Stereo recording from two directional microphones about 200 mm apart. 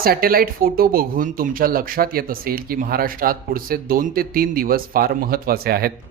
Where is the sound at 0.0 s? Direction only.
45° right (ahead or behind).